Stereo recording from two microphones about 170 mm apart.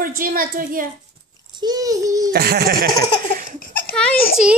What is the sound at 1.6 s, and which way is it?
Speech, 20° right (ahead or behind).